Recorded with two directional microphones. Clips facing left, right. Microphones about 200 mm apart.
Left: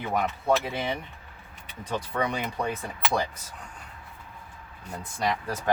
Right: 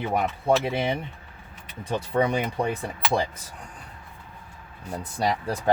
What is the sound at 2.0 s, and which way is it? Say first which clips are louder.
Speech: right 6 dB; 25° right (ahead or behind).